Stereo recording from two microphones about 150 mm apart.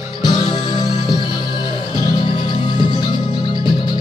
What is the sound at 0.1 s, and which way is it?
Music, 30° left (ahead or behind).